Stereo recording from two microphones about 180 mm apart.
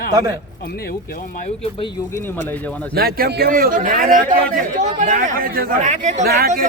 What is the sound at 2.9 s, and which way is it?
A man's voice, 60° right (ahead or behind).